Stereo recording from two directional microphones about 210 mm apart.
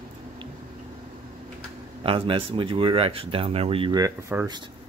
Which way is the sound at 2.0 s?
25° right (ahead or behind).